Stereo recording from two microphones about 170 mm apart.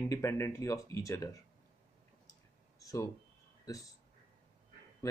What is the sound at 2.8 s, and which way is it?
Speech, 20° left (ahead or behind).